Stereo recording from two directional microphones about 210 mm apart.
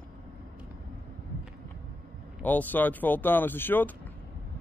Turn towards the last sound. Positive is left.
turn(degrees=10)  # may be behind; listen again after turning